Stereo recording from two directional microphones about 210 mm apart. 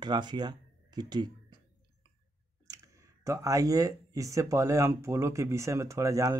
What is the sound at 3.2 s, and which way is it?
Speech, 15° right (ahead or behind).